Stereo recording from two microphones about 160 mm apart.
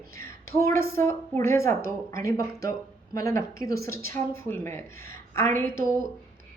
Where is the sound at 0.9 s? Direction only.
15° left (ahead or behind).